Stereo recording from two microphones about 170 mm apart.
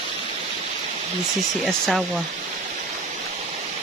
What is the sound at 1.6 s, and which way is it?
Speech, centre (ahead or behind).